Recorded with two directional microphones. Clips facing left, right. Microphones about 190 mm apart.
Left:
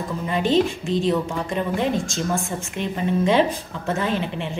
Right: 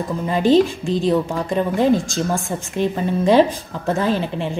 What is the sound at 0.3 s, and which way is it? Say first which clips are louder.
A woman's voice: right 5 dB; 35° right (ahead or behind).